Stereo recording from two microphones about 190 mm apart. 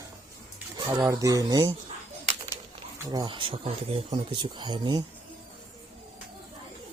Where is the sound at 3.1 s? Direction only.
25° right (ahead or behind).